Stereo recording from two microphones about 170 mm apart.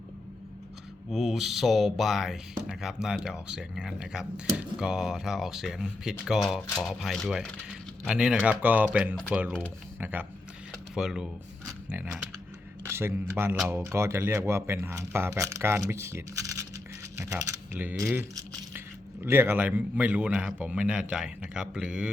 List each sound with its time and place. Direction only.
1.1 s a man's voice: centre (ahead or behind)
17.3 s a man's voice: 10° right (ahead or behind)